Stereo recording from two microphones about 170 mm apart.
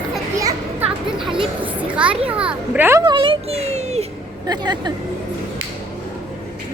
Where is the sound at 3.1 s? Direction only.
30° right (ahead or behind).